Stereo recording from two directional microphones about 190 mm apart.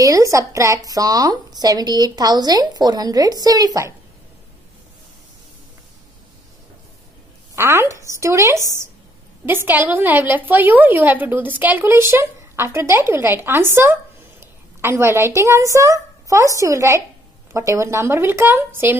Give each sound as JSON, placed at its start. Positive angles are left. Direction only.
{"t": 0.0, "sound": "speech", "side_deg": -15}
{"t": 7.5, "sound": "a woman's voice", "side_deg": -10}